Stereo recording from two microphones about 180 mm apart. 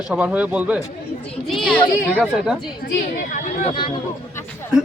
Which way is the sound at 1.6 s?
5° left (ahead or behind).